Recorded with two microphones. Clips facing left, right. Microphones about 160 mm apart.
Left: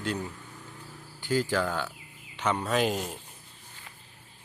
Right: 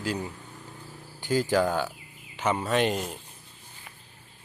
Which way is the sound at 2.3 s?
5° right (ahead or behind).